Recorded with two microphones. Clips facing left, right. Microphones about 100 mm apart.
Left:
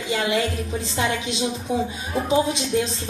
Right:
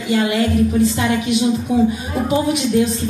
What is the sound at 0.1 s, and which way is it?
Speech, 25° left (ahead or behind).